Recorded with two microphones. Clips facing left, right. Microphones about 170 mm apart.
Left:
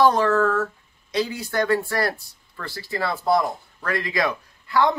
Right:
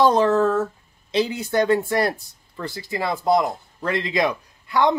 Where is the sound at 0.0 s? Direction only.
20° right (ahead or behind).